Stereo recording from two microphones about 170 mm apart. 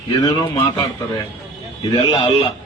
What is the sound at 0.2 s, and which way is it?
Speech, 25° left (ahead or behind).